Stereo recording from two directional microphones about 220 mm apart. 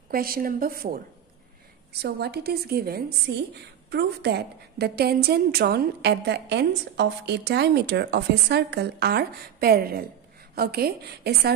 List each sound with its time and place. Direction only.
0.1 s a woman's voice: 40° right (ahead or behind)